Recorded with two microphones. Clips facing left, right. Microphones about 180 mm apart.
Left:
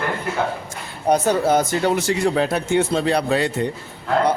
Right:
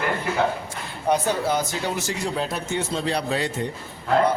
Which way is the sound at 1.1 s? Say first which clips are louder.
Left 5 dB; 45° left (ahead or behind).